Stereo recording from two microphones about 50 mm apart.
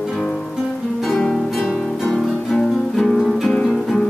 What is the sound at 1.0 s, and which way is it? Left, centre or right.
Music, centre.